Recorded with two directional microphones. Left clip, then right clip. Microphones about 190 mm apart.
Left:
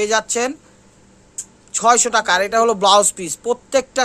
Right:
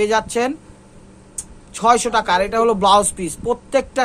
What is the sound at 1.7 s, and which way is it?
Speech, 20° left (ahead or behind).